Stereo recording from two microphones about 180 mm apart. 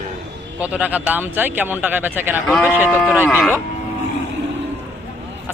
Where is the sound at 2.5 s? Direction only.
Centre (ahead or behind).